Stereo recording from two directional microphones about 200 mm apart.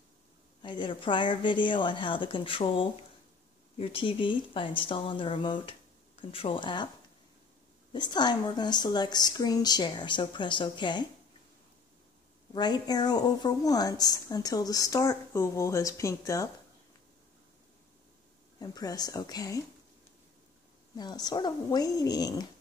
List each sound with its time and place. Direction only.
0.6 s a woman's voice: 25° left (ahead or behind)
7.9 s a woman's voice: 20° left (ahead or behind)
12.5 s a woman's voice: 20° left (ahead or behind)
18.6 s a woman's voice: 20° left (ahead or behind)
20.9 s a woman's voice: 20° left (ahead or behind)